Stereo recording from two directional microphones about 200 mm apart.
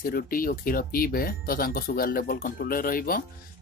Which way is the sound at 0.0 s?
45° left (ahead or behind).